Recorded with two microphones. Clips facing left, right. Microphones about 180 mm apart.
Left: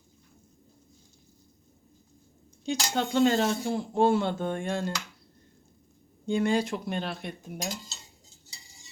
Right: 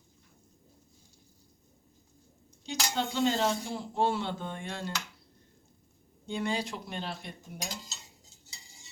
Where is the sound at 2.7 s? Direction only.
55° left (ahead or behind).